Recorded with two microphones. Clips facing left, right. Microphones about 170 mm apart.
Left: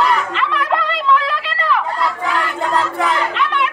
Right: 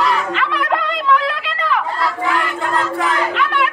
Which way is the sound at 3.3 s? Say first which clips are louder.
Right 1 dB; 5° right (ahead or behind).